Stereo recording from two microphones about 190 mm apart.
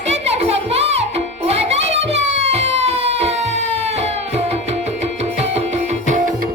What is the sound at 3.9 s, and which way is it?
Tabla, 35° right (ahead or behind).